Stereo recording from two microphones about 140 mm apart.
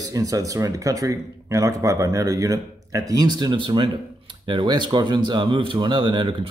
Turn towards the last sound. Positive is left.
turn(degrees=-35)  # may be behind; listen again after turning